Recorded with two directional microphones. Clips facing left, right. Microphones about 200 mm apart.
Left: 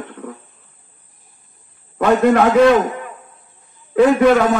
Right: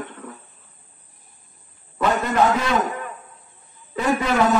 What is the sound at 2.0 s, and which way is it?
Speech, 50° left (ahead or behind).